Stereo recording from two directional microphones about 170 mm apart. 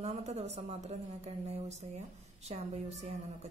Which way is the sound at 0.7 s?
40° right (ahead or behind).